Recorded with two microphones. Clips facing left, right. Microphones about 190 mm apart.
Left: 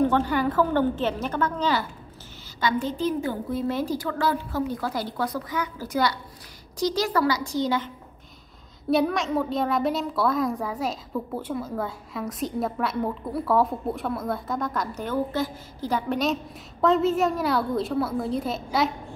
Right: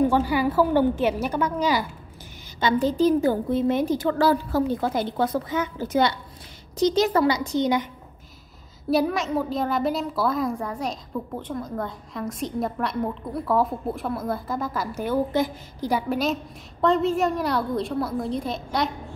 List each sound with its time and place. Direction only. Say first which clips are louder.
0.0 s a woman's voice: right 1 dB; 10° right (ahead or behind)
2.6 s a woman's voice: right 5 dB; 35° right (ahead or behind)
3.4 s a woman's voice: right 5 dB; 20° right (ahead or behind)
4.7 s a woman's voice: right 4 dB; 20° right (ahead or behind)
8.9 s a child's voice: even; centre (ahead or behind)